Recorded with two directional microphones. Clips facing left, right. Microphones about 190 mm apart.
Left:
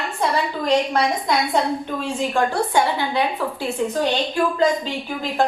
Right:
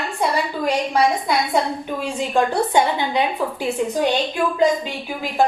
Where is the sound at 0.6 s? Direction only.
10° right (ahead or behind).